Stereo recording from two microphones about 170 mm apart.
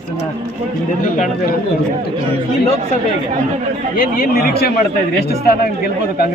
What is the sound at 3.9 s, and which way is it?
Speech, 60° left (ahead or behind).